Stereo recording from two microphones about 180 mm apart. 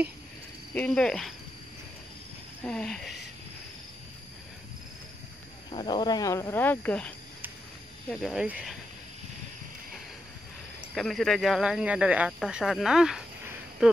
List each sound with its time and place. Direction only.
0.7 s speech: 5° left (ahead or behind)
2.6 s speech: 5° left (ahead or behind)
5.7 s speech: 25° left (ahead or behind); by 8.7 s 5° right (ahead or behind)
11.0 s speech: centre (ahead or behind)